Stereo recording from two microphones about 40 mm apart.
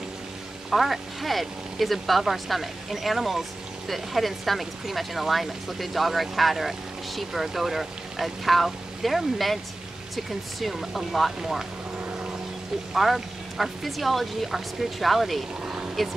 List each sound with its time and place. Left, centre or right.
0.7 s speech: centre
12.0 s vehicle: right
12.9 s speech: centre
15.6 s a sound: right